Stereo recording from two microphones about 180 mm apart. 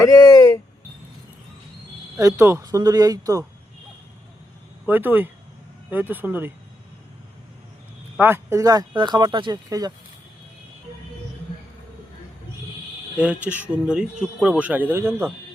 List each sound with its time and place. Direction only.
0.0 s a sound: 20° left (ahead or behind)
2.1 s speech: 15° right (ahead or behind)
4.9 s speech: 10° right (ahead or behind)
8.1 s speech: 10° right (ahead or behind)
13.1 s speech: 5° right (ahead or behind)